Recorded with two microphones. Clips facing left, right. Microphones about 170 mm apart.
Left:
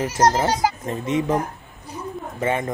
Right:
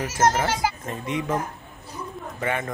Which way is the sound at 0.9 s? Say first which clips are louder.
Left 5 dB; 25° left (ahead or behind).